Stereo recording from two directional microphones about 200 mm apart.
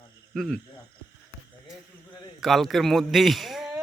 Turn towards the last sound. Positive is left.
turn(degrees=0)  # may be behind; listen again after turning